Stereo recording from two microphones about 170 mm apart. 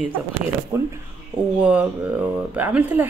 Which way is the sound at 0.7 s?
15° right (ahead or behind).